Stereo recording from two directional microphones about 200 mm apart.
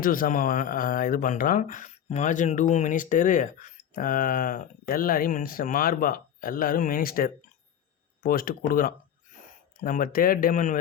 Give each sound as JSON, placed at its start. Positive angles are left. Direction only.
{"t": 0.0, "sound": "speech", "side_deg": 45}